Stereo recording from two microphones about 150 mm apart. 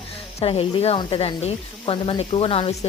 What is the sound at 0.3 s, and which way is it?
Speech, 40° left (ahead or behind).